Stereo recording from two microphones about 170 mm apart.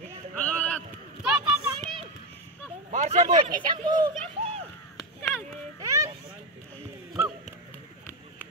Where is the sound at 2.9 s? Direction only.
45° right (ahead or behind).